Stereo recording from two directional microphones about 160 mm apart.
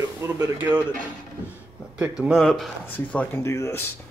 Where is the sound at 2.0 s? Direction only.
Centre (ahead or behind); by 3.9 s 15° left (ahead or behind).